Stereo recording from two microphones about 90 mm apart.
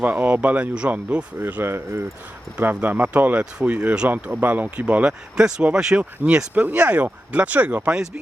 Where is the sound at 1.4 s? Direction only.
25° right (ahead or behind).